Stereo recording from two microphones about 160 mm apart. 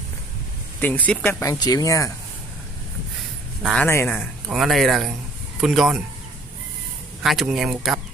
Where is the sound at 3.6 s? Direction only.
Centre (ahead or behind).